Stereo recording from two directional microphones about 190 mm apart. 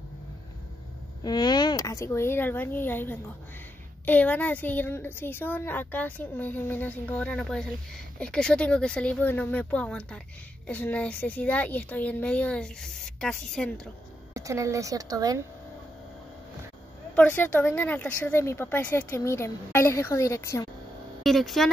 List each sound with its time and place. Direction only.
1.2 s a woman's voice: 20° left (ahead or behind); by 13.7 s 5° left (ahead or behind)
14.3 s a woman's voice: 15° right (ahead or behind)
17.1 s a woman's voice: 10° left (ahead or behind)
21.2 s speech: centre (ahead or behind)